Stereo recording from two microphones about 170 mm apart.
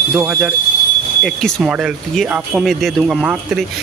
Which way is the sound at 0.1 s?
10° right (ahead or behind).